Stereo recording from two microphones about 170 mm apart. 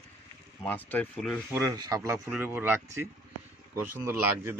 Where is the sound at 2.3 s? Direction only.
10° right (ahead or behind).